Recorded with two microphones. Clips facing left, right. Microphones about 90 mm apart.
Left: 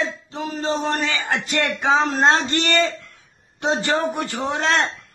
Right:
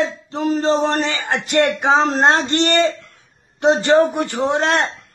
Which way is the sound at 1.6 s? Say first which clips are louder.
Right 3 dB; 20° right (ahead or behind).